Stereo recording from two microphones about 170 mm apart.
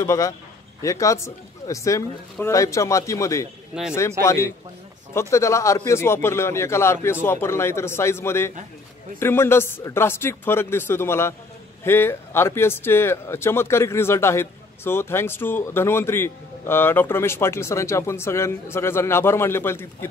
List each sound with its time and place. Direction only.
0.0 s speech: 15° left (ahead or behind)
3.7 s speech: 5° right (ahead or behind)
4.2 s speech: 15° left (ahead or behind)